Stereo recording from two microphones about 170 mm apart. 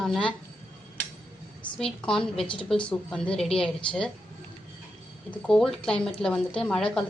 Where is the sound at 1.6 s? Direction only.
5° left (ahead or behind).